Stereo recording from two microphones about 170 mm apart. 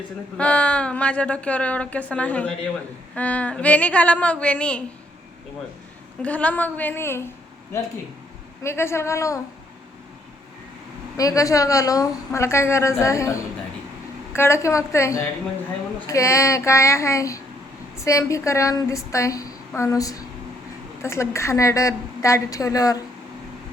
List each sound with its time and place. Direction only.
0.3 s a woman's voice: 5° left (ahead or behind)
6.2 s a woman's voice: 10° left (ahead or behind)
8.6 s a woman's voice: 15° left (ahead or behind)
11.2 s a woman's voice: 20° left (ahead or behind)